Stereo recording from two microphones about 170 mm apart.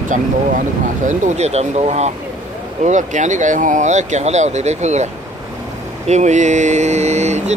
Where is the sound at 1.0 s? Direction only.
45° right (ahead or behind).